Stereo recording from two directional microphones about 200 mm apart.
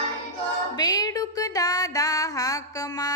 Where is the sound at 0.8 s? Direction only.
20° left (ahead or behind).